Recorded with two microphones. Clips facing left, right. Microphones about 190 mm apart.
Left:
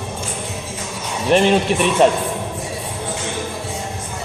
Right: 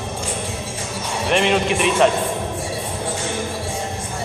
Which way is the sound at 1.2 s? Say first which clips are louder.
Left 4 dB; 35° left (ahead or behind).